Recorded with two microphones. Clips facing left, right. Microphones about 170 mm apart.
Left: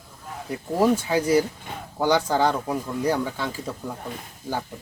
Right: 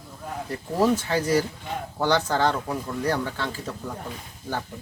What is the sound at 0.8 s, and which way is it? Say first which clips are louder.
Speech: left 1 dB; 10° left (ahead or behind).